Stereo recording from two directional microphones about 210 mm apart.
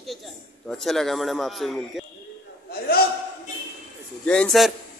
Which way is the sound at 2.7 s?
45° left (ahead or behind).